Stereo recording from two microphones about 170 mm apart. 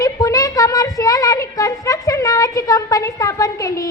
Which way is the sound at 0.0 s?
20° left (ahead or behind).